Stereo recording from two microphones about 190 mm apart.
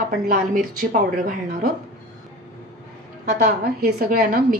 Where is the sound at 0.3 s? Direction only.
45° right (ahead or behind).